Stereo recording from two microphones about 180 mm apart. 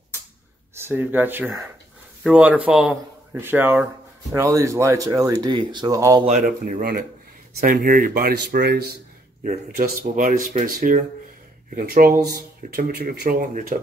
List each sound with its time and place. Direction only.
0.7 s speech: 10° right (ahead or behind)
6.2 s speech: 45° right (ahead or behind); by 8.8 s 60° right (ahead or behind)
9.4 s speech: 50° right (ahead or behind)